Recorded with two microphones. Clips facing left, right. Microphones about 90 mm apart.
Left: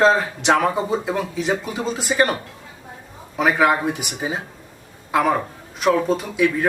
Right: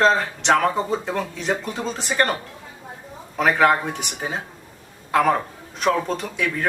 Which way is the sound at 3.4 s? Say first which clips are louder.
Even; 5° left (ahead or behind).